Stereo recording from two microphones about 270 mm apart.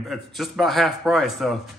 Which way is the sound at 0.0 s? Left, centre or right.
Centre.